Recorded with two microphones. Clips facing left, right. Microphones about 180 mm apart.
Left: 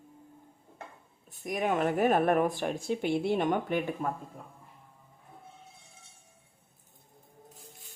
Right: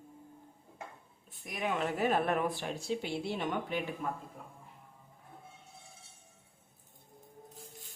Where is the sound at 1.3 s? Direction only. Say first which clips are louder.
Left 6 dB; 45° left (ahead or behind).